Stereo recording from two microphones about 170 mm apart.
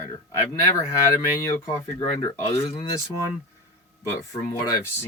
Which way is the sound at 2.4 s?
35° left (ahead or behind).